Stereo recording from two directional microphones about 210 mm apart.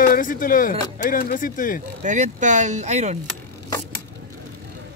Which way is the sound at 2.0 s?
35° right (ahead or behind).